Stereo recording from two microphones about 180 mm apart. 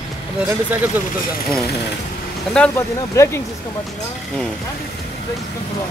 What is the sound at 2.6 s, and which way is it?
Speech, 15° left (ahead or behind).